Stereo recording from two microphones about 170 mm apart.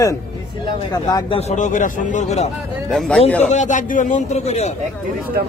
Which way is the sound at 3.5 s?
45° left (ahead or behind).